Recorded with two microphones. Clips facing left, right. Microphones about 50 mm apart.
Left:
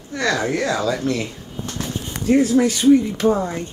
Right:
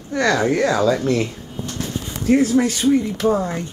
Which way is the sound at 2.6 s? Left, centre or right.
Centre.